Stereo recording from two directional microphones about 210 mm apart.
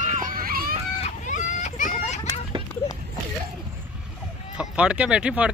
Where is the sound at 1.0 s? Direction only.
35° left (ahead or behind).